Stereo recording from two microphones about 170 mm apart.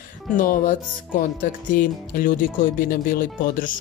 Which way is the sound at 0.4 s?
50° left (ahead or behind).